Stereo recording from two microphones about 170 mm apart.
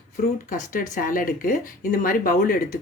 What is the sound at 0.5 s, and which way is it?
Speech, 50° left (ahead or behind).